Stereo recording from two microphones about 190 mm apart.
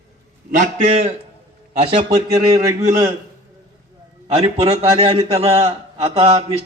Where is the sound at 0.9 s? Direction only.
35° right (ahead or behind).